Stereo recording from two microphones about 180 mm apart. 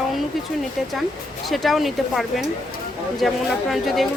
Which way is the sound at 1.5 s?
Centre (ahead or behind).